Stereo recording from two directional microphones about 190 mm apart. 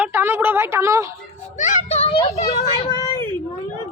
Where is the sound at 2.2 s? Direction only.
20° left (ahead or behind).